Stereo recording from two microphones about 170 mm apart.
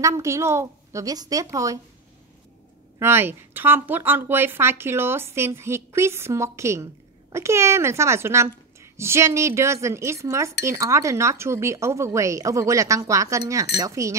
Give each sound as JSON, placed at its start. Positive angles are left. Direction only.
{"t": 0.0, "sound": "a woman's voice", "side_deg": -15}
{"t": 3.0, "sound": "a woman's voice", "side_deg": -15}